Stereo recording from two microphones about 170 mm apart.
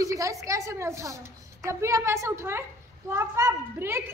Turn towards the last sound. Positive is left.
turn(degrees=-15)  # may be behind; listen again after turning